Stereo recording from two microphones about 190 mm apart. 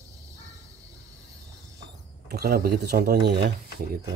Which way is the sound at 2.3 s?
55° right (ahead or behind).